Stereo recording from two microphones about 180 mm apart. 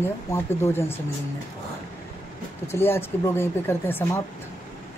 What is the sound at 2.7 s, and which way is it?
Speech, 15° left (ahead or behind).